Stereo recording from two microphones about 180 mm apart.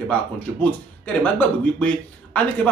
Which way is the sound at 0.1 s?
10° left (ahead or behind).